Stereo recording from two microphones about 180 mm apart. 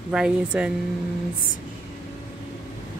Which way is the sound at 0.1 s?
5° right (ahead or behind).